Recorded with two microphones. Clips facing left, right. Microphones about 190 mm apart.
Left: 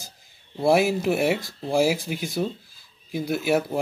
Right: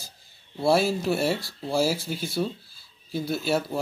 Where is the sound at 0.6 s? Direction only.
15° left (ahead or behind).